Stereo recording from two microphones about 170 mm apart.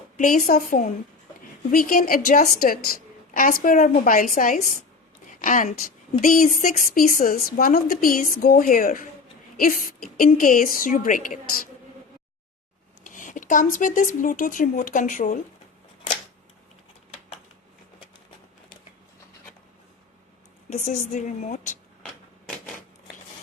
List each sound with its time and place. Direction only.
0.2 s a woman's voice: 50° left (ahead or behind)
13.1 s speech: 50° left (ahead or behind)
20.7 s speech: 45° left (ahead or behind)